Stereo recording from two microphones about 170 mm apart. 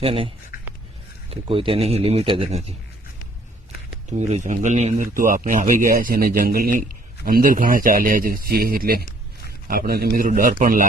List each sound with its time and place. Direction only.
0.0 s speech: 35° right (ahead or behind)
0.5 s a sound: 60° left (ahead or behind)
1.5 s speech: 30° right (ahead or behind)
4.2 s a man's voice: 45° right (ahead or behind)